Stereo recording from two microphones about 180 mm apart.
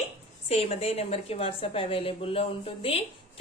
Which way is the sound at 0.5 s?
35° left (ahead or behind).